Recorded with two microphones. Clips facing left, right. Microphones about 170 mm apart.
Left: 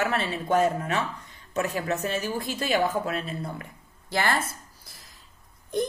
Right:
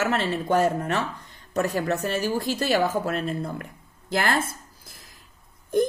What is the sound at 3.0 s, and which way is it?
Speech, 45° right (ahead or behind).